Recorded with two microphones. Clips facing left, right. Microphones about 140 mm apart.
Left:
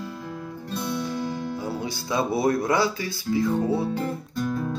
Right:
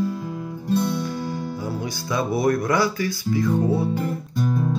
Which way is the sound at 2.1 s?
30° left (ahead or behind).